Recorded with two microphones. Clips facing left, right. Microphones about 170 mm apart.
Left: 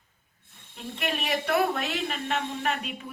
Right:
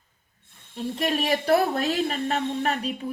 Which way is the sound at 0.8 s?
35° right (ahead or behind).